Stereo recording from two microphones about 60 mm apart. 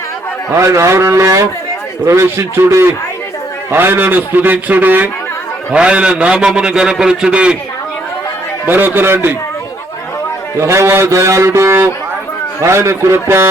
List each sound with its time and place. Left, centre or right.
0.5 s a man's voice: right
3.7 s a man's voice: right
5.7 s a man's voice: centre
8.6 s a man's voice: right
10.6 s a man's voice: right